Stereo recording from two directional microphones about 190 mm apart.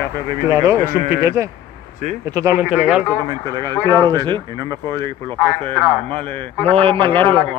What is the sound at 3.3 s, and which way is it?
A man's voice, 20° right (ahead or behind).